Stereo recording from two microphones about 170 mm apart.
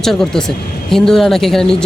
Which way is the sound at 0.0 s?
5° left (ahead or behind).